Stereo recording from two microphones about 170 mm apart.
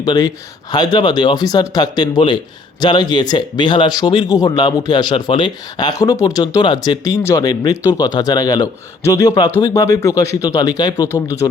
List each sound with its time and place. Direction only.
0.0 s speech: 25° left (ahead or behind)